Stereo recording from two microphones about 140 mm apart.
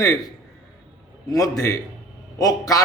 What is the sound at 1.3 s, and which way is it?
Speech, 25° left (ahead or behind).